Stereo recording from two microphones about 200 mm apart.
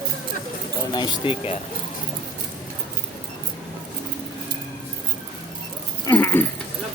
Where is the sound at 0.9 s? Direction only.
20° left (ahead or behind).